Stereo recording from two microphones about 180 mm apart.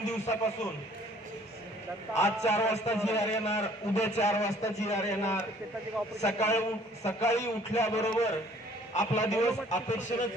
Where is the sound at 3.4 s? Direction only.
35° left (ahead or behind).